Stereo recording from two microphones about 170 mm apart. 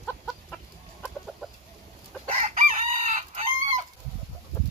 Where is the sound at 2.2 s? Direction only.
45° right (ahead or behind).